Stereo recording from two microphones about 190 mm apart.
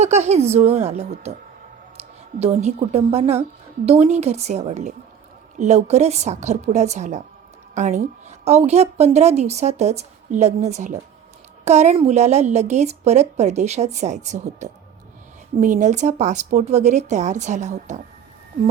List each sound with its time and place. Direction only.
0.0 s a woman's voice: 35° right (ahead or behind)
2.4 s a woman's voice: 35° right (ahead or behind)